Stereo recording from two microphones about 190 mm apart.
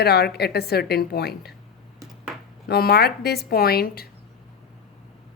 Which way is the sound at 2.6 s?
55° left (ahead or behind).